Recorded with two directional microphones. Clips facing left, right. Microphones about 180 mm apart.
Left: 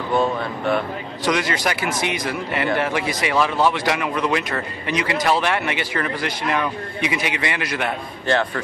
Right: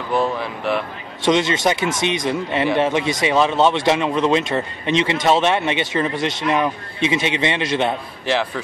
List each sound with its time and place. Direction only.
0.1 s speech: centre (ahead or behind)
1.2 s a man's voice: 25° right (ahead or behind)
8.3 s speech: 5° right (ahead or behind)